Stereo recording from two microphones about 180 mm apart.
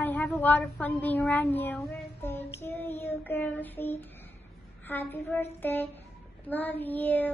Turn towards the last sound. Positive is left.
turn(degrees=10)  # may be behind; listen again after turning